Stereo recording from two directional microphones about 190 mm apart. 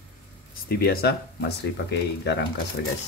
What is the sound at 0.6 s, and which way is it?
Speech, 55° left (ahead or behind).